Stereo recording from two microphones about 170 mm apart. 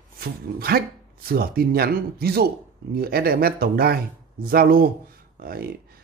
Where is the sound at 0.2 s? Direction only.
65° right (ahead or behind).